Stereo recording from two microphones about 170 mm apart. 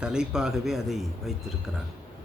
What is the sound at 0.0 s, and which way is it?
A man's voice, 5° right (ahead or behind).